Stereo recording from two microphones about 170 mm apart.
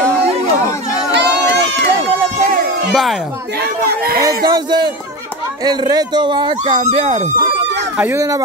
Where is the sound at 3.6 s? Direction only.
65° right (ahead or behind).